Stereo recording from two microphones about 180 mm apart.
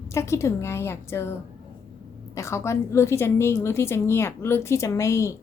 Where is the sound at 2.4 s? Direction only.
15° left (ahead or behind).